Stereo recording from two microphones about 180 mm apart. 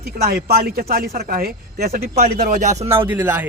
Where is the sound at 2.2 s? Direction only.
45° right (ahead or behind).